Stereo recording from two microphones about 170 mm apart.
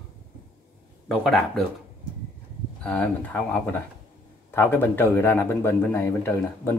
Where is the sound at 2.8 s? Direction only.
5° left (ahead or behind).